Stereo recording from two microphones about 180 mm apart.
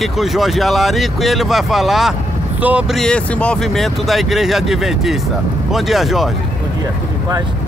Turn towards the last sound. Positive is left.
turn(degrees=0)  # may be behind; listen again after turning